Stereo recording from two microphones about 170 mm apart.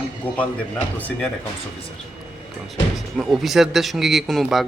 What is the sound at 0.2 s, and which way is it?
Speech, 10° left (ahead or behind).